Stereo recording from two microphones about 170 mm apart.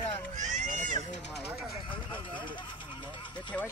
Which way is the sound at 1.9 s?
30° left (ahead or behind).